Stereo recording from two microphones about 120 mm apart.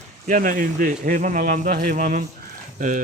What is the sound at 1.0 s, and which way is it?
Speech, 90° right.